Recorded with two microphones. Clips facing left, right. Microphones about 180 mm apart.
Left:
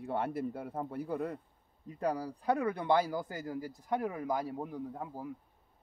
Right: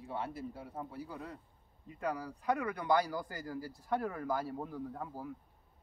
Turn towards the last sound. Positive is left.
turn(degrees=10)  # may be behind; listen again after turning